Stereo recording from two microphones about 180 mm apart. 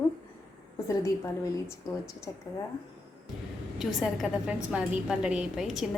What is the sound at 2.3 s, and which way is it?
Speech, 20° left (ahead or behind).